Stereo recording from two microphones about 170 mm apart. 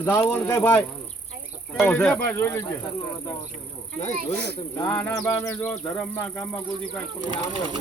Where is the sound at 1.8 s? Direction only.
10° left (ahead or behind).